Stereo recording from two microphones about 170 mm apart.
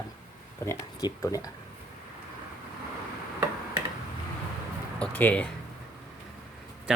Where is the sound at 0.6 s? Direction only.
15° left (ahead or behind).